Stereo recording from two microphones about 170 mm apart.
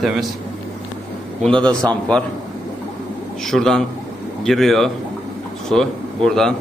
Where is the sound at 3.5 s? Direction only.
5° left (ahead or behind).